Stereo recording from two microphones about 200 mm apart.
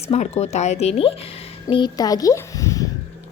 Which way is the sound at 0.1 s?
30° left (ahead or behind).